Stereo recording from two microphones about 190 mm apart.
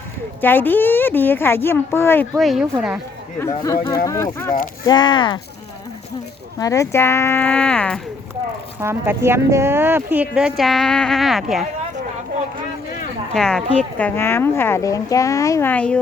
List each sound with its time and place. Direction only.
0.4 s a woman's voice: 10° left (ahead or behind)
2.3 s speech: centre (ahead or behind)
3.3 s a woman's voice: 15° left (ahead or behind)
6.6 s a woman's voice: 15° left (ahead or behind)
8.8 s speech: 10° right (ahead or behind)
13.3 s a woman's voice: 5° left (ahead or behind)